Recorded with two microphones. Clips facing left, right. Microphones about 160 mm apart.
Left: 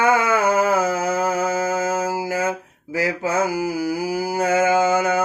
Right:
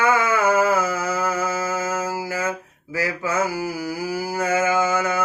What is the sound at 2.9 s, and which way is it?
Mantra, 15° left (ahead or behind).